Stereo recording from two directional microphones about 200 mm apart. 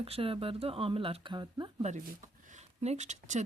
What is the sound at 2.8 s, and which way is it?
Speech, 35° right (ahead or behind).